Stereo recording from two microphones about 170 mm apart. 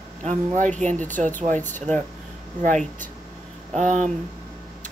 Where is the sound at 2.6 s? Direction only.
50° right (ahead or behind).